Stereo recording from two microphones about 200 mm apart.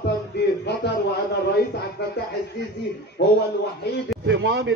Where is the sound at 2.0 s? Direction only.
55° left (ahead or behind).